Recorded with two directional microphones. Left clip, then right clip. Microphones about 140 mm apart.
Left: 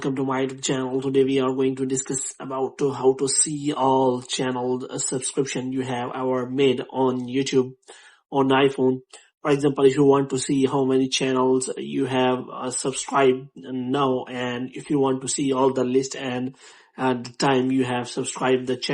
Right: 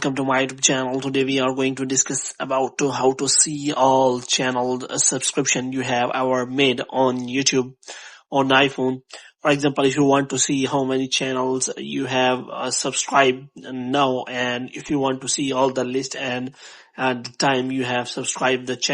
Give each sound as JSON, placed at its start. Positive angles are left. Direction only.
{"t": 0.0, "sound": "speech", "side_deg": -40}